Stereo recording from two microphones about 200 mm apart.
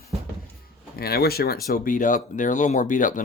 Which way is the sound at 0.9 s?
50° left (ahead or behind).